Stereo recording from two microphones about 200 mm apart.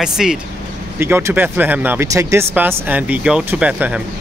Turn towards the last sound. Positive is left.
turn(degrees=-5)  # may be behind; listen again after turning